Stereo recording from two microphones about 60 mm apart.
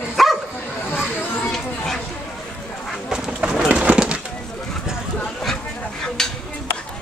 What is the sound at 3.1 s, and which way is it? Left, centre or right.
Pigeon, centre.